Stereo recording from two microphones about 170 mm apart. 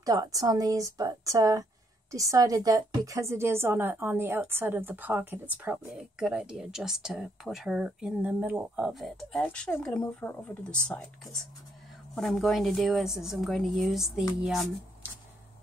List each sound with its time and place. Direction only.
0.0 s speech: 20° right (ahead or behind); by 10.8 s 5° left (ahead or behind)
12.2 s a woman's voice: centre (ahead or behind)